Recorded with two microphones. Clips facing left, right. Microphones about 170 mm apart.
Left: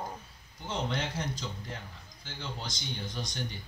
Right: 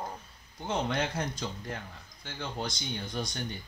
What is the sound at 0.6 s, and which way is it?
Speech, 55° right (ahead or behind).